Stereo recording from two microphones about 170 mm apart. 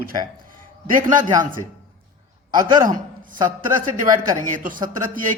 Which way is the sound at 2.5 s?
25° right (ahead or behind).